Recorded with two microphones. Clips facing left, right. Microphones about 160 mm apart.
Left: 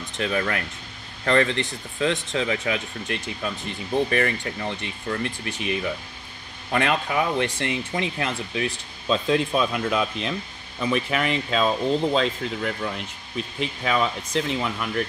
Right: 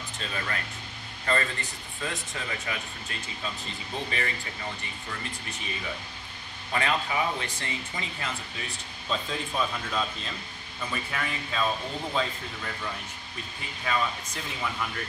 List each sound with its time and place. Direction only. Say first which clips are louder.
0.2 s speech: left 10 dB; 65° left (ahead or behind)